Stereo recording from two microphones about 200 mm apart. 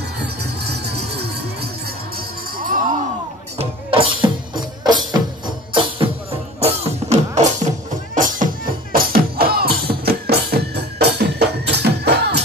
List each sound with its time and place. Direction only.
0.2 s music: 55° right (ahead or behind)
3.5 s music: 25° right (ahead or behind); by 12.4 s 55° right (ahead or behind)